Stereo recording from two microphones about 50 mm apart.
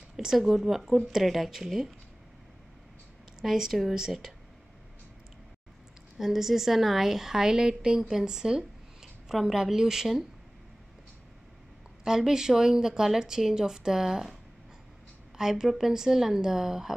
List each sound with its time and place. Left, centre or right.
0.2 s speech: centre
3.4 s speech: centre
6.1 s speech: centre
12.0 s speech: centre
15.3 s speech: centre